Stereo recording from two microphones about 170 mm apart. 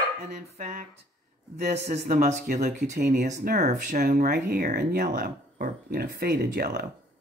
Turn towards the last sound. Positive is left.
turn(degrees=-55)  # may be behind; listen again after turning